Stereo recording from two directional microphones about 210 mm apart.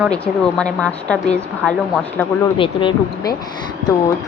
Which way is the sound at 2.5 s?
25° left (ahead or behind).